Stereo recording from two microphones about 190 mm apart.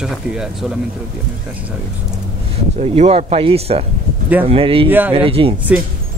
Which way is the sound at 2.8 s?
35° right (ahead or behind).